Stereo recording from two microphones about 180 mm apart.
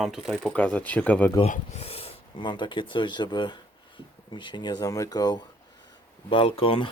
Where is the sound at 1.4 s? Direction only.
35° left (ahead or behind).